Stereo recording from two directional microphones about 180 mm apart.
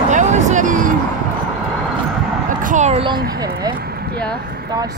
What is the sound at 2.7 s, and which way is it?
Speech, 40° right (ahead or behind).